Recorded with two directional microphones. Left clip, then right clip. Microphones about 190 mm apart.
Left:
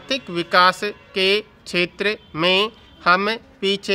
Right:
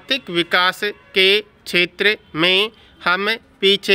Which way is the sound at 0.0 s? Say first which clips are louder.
Right 4 dB; 15° right (ahead or behind).